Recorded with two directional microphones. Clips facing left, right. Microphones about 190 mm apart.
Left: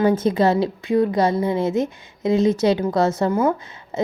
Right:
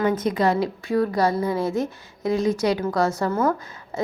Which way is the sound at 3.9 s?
20° left (ahead or behind).